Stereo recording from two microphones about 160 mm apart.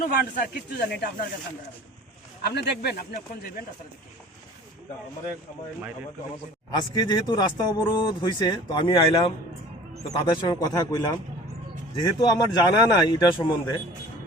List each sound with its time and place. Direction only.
0.0 s speech: 70° left (ahead or behind)
2.4 s speech: 80° left
6.7 s speech: 25° left (ahead or behind)